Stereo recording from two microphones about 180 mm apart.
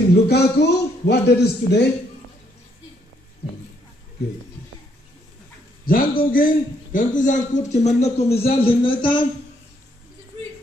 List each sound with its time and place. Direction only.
0.3 s a man's voice: 65° left (ahead or behind)
5.9 s a man's voice: 50° left (ahead or behind); by 9.2 s 30° left (ahead or behind)